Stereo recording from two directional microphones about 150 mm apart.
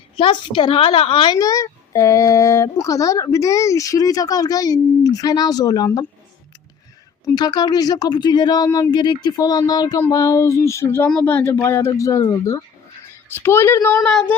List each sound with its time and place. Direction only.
0.2 s a woman's voice: 35° left (ahead or behind)
7.3 s a woman's voice: 25° left (ahead or behind); by 14.3 s 5° left (ahead or behind)